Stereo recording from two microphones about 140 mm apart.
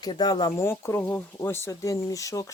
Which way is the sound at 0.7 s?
15° left (ahead or behind).